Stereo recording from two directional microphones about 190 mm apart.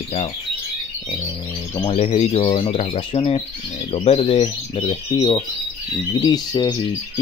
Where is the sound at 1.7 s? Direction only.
30° left (ahead or behind).